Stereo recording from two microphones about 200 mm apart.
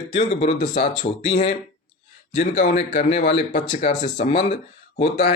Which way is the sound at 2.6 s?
45° left (ahead or behind).